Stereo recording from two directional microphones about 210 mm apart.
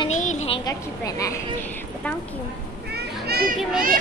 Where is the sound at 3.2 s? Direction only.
45° right (ahead or behind).